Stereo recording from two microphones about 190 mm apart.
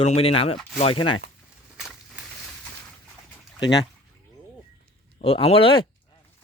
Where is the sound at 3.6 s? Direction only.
20° left (ahead or behind).